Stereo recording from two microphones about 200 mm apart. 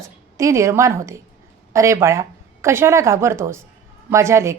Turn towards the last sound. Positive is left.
turn(degrees=-15)  # may be behind; listen again after turning